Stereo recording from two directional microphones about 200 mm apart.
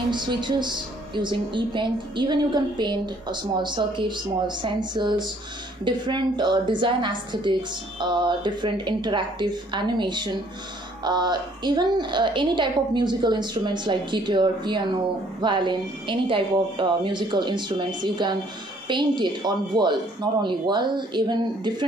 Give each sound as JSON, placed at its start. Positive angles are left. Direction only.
{"t": 0.1, "sound": "a woman's voice", "side_deg": -20}